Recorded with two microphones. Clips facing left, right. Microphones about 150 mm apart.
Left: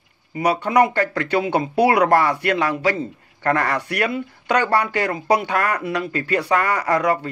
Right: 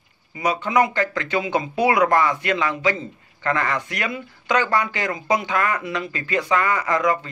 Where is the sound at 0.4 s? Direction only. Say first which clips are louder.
Left 3 dB; 65° left (ahead or behind).